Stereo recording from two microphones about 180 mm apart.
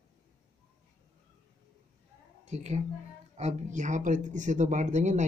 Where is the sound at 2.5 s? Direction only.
40° right (ahead or behind).